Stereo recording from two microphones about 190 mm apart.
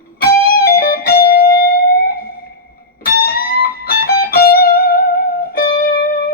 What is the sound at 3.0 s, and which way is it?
Music, 50° left (ahead or behind).